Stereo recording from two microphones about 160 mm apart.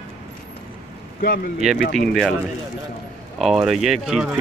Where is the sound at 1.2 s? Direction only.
70° left (ahead or behind).